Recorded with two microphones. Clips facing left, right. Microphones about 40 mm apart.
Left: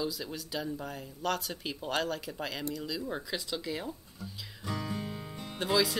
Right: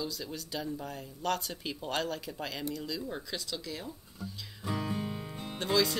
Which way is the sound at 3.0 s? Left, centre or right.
Centre.